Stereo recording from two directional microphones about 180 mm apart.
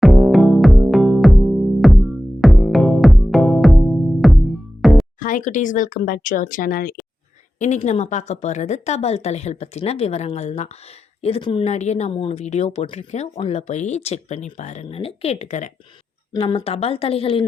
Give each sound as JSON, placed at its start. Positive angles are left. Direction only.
{"t": 0.0, "sound": "music", "side_deg": 0}
{"t": 5.2, "sound": "speech", "side_deg": 45}
{"t": 7.6, "sound": "a woman's voice", "side_deg": 40}
{"t": 16.3, "sound": "a woman's voice", "side_deg": 25}